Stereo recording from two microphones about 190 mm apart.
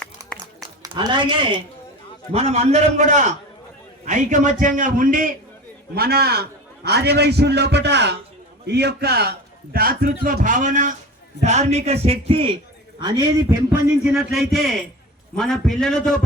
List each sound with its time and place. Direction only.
0.2 s a sound: 15° right (ahead or behind)
0.8 s a man's voice: 25° right (ahead or behind)
14.0 s a man's voice: 5° right (ahead or behind)